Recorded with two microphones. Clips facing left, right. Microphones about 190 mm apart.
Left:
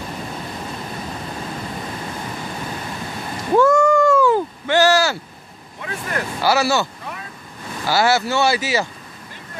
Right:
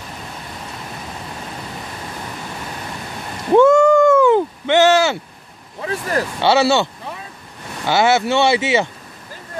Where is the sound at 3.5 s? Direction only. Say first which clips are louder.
Right 4 dB; 25° right (ahead or behind).